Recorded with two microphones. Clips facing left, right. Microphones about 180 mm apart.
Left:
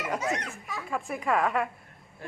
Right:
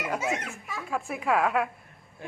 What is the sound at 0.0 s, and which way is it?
Speech, 5° right (ahead or behind).